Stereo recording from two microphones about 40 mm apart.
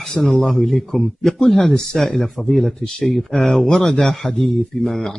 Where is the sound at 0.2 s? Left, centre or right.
Centre.